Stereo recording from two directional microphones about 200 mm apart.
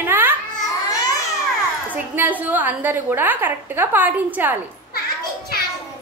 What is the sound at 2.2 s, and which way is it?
A woman's voice, 10° right (ahead or behind).